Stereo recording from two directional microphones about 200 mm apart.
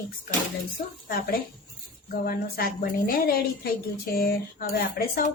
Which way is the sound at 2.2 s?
45° left (ahead or behind).